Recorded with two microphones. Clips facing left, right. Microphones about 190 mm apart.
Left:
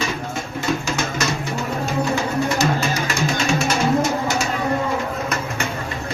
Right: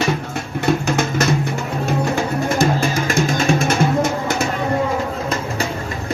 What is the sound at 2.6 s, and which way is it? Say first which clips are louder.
Music: right 3 dB; 50° right (ahead or behind).